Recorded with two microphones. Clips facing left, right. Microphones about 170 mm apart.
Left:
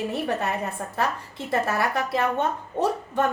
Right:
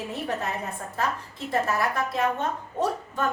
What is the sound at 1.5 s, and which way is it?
A woman's voice, 70° left (ahead or behind).